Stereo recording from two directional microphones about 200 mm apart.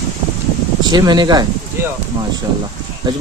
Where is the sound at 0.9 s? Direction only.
20° right (ahead or behind).